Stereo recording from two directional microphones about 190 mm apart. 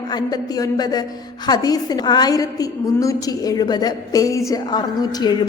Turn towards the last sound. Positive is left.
turn(degrees=20)  # may be behind; listen again after turning